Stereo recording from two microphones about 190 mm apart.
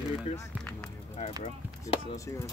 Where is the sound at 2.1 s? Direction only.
15° left (ahead or behind).